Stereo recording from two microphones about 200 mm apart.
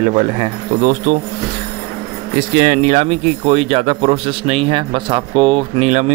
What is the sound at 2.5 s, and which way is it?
Speech, 45° right (ahead or behind).